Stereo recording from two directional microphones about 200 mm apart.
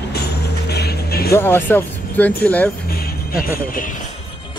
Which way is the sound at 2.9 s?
50° left (ahead or behind).